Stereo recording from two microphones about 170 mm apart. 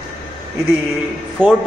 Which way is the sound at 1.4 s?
10° right (ahead or behind).